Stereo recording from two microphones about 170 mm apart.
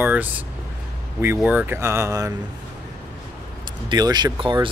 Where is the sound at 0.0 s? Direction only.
10° right (ahead or behind).